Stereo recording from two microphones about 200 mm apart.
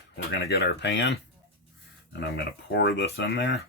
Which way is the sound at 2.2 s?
55° left (ahead or behind).